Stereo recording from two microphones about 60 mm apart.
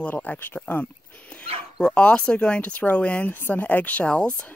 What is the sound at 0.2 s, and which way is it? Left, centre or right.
Speech, left.